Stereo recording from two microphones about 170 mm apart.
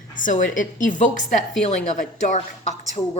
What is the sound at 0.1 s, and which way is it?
A woman's voice, 50° left (ahead or behind).